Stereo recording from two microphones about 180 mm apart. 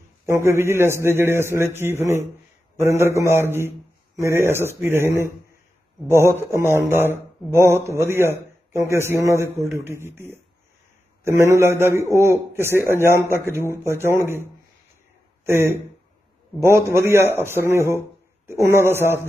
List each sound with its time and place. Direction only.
0.3 s a man's voice: 15° right (ahead or behind)
11.5 s a man's voice: 15° right (ahead or behind)
15.4 s a man's voice: 15° right (ahead or behind)